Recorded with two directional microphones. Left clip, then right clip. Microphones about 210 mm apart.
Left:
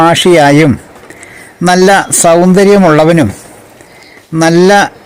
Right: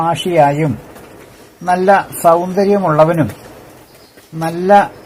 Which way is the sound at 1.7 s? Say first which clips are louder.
Left 5 dB; 55° left (ahead or behind).